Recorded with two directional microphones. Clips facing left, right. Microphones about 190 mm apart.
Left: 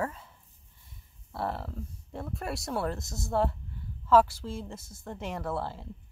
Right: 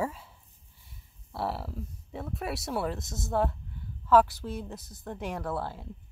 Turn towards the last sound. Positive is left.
turn(degrees=0)  # may be behind; listen again after turning